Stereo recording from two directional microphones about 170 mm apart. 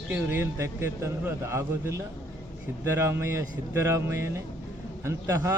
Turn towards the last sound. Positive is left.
turn(degrees=-15)  # may be behind; listen again after turning